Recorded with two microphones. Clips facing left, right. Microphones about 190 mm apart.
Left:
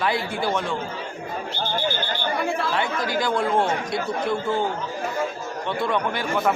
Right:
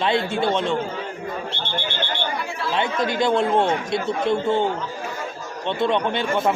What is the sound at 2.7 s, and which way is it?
Speech, 20° right (ahead or behind).